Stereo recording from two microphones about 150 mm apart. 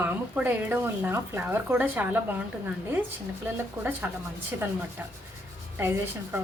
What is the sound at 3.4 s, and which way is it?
Speech, 10° right (ahead or behind).